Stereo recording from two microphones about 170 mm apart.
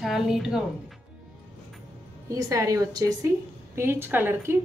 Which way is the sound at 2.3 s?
20° right (ahead or behind).